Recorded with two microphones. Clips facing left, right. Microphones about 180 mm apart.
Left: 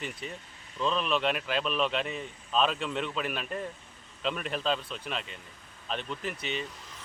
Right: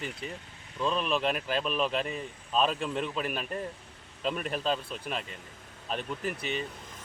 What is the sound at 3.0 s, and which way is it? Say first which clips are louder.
Speech: right 1 dB; 40° right (ahead or behind).